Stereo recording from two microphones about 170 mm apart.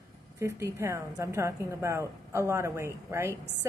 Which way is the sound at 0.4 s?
15° right (ahead or behind).